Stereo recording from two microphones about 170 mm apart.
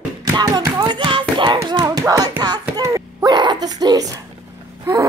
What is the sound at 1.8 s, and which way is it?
Music, 20° right (ahead or behind).